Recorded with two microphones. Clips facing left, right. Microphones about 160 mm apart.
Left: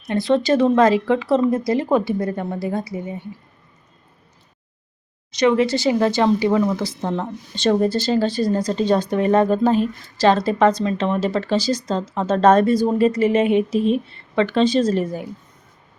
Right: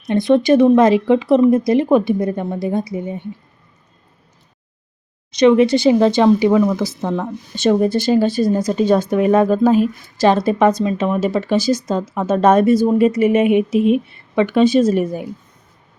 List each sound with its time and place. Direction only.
0.1 s a woman's voice: 15° right (ahead or behind)
5.4 s a woman's voice: 20° right (ahead or behind)